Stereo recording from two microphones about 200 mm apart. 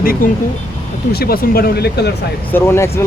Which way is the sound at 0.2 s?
45° left (ahead or behind).